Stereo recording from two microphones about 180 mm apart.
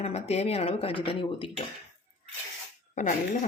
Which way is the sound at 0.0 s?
35° left (ahead or behind).